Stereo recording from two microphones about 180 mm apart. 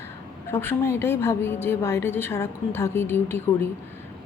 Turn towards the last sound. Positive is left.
turn(degrees=10)  # may be behind; listen again after turning